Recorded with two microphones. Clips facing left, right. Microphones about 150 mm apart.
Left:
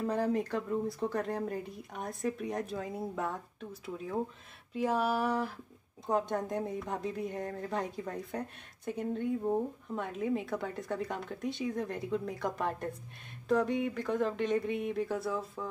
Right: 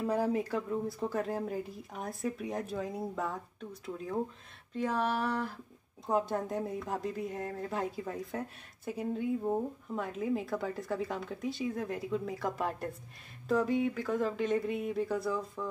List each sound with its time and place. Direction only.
0.0 s speech: 5° right (ahead or behind)
4.7 s a sound: 10° left (ahead or behind)
6.0 s speech: 5° right (ahead or behind)